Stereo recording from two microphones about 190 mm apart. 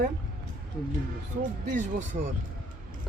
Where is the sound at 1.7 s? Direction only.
40° right (ahead or behind).